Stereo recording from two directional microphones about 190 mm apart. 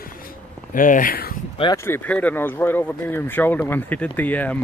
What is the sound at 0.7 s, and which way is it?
Speech, 45° left (ahead or behind).